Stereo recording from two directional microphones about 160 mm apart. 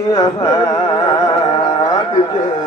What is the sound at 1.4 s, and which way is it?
Music, 40° left (ahead or behind).